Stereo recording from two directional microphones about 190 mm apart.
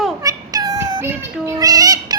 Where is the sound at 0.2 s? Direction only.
20° right (ahead or behind).